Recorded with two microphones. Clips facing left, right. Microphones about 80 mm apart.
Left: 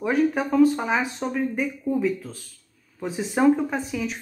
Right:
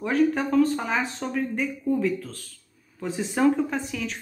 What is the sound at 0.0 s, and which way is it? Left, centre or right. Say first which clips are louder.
Speech: even; centre.